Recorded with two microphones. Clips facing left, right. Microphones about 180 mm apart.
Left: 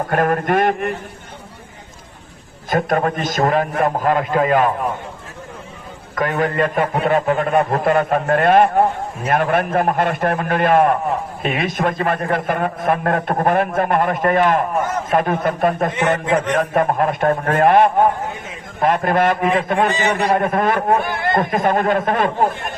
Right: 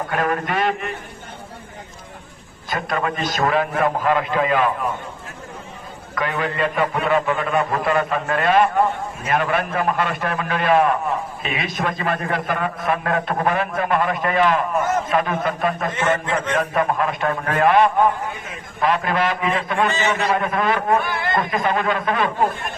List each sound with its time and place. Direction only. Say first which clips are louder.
0.1 s a man's voice: left 6 dB; 50° left (ahead or behind)
2.6 s a man's voice: left 6 dB; 50° left (ahead or behind)
6.1 s a man's voice: left 5 dB; 45° left (ahead or behind)
15.9 s a man's voice: left 3 dB; 15° left (ahead or behind)
16.6 s a man's voice: left 3 dB; 50° left (ahead or behind)
19.9 s a man's voice: left 3 dB; 15° left (ahead or behind)
20.3 s a man's voice: left 4 dB; 50° left (ahead or behind)